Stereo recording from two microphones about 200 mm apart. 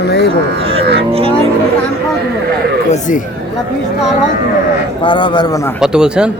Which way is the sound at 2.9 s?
40° left (ahead or behind).